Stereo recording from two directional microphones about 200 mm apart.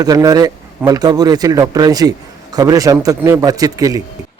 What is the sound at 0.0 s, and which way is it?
A man's voice, 20° right (ahead or behind).